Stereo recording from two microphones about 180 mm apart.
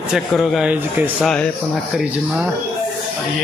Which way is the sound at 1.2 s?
5° left (ahead or behind).